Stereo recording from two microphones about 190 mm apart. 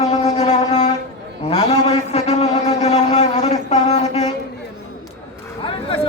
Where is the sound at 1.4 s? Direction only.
35° left (ahead or behind).